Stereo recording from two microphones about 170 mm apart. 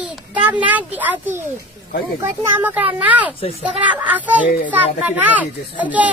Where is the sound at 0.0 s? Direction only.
10° right (ahead or behind).